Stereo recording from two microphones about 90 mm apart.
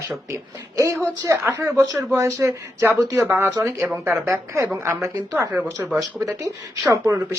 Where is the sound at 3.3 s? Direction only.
30° right (ahead or behind).